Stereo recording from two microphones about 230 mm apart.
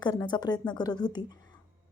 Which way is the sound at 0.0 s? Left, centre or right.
Centre.